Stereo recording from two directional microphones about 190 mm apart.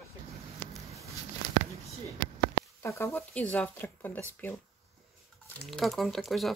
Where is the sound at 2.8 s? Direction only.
15° left (ahead or behind).